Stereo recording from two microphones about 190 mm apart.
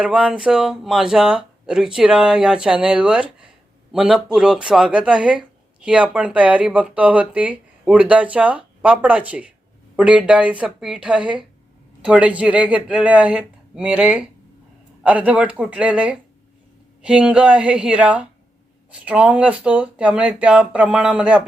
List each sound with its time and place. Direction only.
0.0 s speech: 5° right (ahead or behind)